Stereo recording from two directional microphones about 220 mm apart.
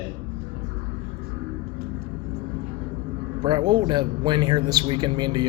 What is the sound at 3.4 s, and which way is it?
Speech, 20° right (ahead or behind).